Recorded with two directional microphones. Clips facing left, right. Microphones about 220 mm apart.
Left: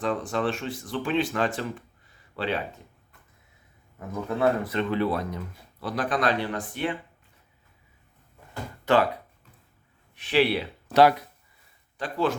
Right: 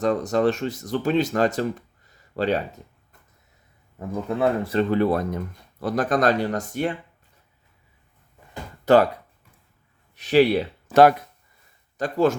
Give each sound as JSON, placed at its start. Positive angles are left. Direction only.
{"t": 0.0, "sound": "speech", "side_deg": -40}
{"t": 4.1, "sound": "speech", "side_deg": -25}
{"t": 8.8, "sound": "a sound", "side_deg": -40}
{"t": 10.2, "sound": "speech", "side_deg": -40}
{"t": 11.9, "sound": "speech", "side_deg": -45}